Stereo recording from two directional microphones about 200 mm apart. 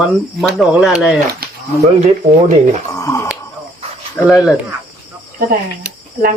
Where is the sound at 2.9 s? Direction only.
15° left (ahead or behind).